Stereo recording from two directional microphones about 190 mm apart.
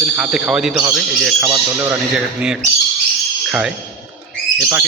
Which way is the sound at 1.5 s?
15° right (ahead or behind).